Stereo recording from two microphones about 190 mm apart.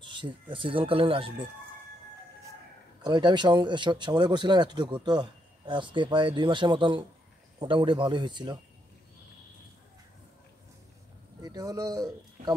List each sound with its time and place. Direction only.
0.0 s speech: 25° right (ahead or behind)
3.0 s speech: 25° right (ahead or behind)
11.4 s speech: 20° right (ahead or behind)